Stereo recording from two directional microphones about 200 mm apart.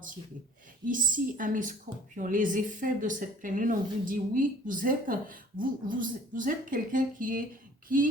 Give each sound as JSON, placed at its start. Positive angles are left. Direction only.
{"t": 0.9, "sound": "a woman's voice", "side_deg": -45}